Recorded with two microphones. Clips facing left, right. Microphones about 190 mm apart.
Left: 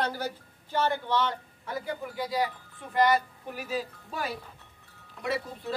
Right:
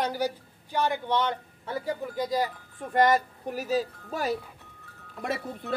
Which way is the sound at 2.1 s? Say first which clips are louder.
Right 1 dB; 40° right (ahead or behind).